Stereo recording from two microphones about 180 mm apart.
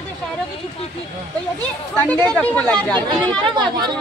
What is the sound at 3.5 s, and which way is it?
Speech, 25° right (ahead or behind).